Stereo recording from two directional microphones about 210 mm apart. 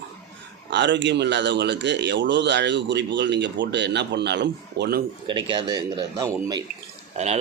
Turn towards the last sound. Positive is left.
turn(degrees=-30)  # may be behind; listen again after turning